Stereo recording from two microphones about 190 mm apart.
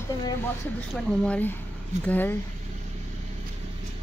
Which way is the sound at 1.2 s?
10° left (ahead or behind).